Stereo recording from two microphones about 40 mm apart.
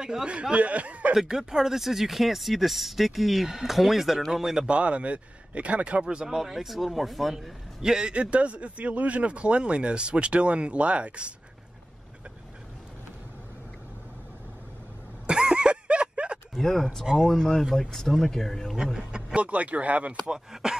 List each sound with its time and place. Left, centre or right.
0.0 s speech: centre
0.3 s speech: right
1.2 s speech: centre
4.6 s speech: right
6.0 s speech: centre
7.8 s speech: centre
8.1 s speech: right
15.2 s a sound: centre
16.5 s speech: centre
18.9 s speech: right
19.4 s speech: right
20.2 s speech: centre